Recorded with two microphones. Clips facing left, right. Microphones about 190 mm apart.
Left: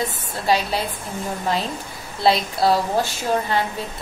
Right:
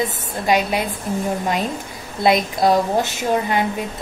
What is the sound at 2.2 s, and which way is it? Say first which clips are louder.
Speech: right 2 dB; 15° right (ahead or behind).